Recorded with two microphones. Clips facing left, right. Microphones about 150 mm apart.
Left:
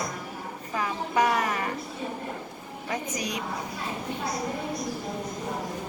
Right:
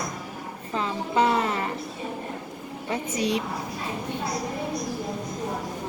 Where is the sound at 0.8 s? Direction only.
25° right (ahead or behind).